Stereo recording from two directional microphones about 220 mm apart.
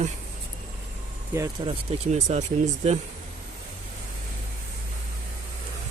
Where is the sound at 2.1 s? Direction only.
30° right (ahead or behind).